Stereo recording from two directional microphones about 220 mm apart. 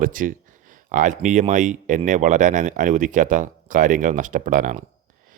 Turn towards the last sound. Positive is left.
turn(degrees=-35)  # may be behind; listen again after turning